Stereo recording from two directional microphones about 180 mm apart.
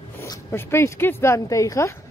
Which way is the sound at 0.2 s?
15° left (ahead or behind).